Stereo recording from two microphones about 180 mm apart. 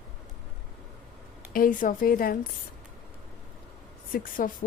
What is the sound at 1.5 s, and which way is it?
Speech, 50° left (ahead or behind).